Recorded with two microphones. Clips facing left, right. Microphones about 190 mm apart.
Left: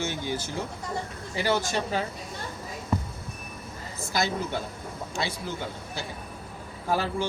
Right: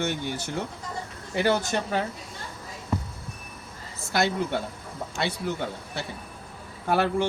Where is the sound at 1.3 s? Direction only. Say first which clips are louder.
Right 2 dB; 55° right (ahead or behind).